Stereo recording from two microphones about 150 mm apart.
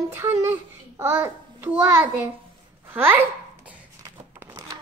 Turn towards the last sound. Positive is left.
turn(degrees=-15)  # may be behind; listen again after turning